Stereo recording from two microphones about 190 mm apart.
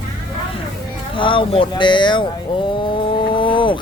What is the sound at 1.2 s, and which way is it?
Speech, 25° left (ahead or behind).